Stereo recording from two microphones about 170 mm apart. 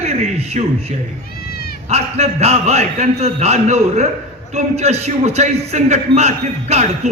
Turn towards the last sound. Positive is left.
turn(degrees=-40)  # may be behind; listen again after turning